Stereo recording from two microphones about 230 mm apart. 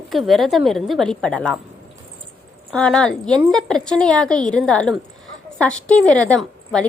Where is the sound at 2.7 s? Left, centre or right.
Centre.